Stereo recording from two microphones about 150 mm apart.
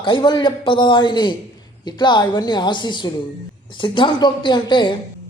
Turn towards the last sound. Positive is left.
turn(degrees=30)  # may be behind; listen again after turning